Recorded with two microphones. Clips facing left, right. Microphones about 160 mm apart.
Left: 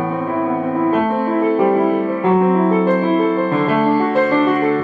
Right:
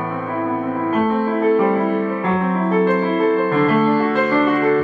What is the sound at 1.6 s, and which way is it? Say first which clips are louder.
Music: left 3 dB; 20° left (ahead or behind).